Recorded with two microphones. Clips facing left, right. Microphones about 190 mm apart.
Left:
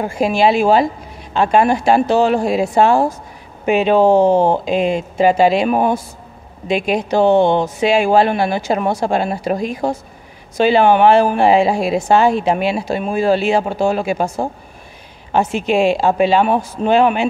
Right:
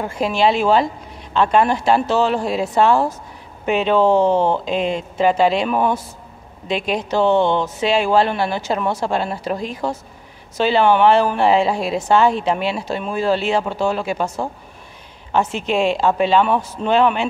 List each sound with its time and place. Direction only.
0.0 s speech: 10° left (ahead or behind)
4.4 s speech: 45° left (ahead or behind)
4.6 s speech: 10° left (ahead or behind)
6.7 s speech: 10° left (ahead or behind)
14.4 s speech: 45° left (ahead or behind)
15.3 s speech: 10° left (ahead or behind)